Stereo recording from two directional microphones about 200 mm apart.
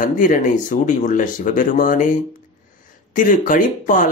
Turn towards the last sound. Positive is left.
turn(degrees=40)  # may be behind; listen again after turning